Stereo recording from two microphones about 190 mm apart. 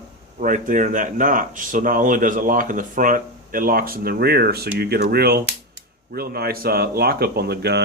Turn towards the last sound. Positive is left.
turn(degrees=-60)  # may be behind; listen again after turning